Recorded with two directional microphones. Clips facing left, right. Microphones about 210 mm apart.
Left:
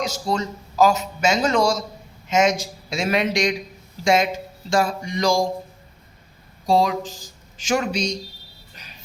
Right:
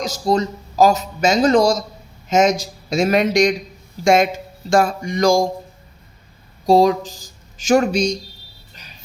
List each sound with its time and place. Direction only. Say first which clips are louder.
0.0 s a man's voice: right 5 dB; 40° right (ahead or behind)
4.0 s a sound: right 4 dB; 50° right (ahead or behind)
6.7 s a man's voice: right 6 dB; 40° right (ahead or behind)